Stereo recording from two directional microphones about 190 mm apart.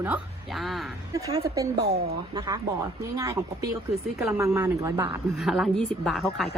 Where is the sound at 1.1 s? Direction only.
15° right (ahead or behind).